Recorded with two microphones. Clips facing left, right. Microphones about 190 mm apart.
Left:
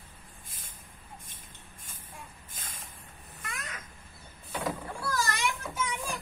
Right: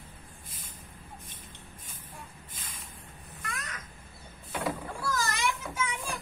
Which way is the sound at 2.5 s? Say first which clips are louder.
Even; 45° left (ahead or behind).